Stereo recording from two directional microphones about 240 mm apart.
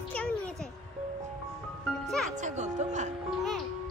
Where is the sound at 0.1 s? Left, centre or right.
Centre.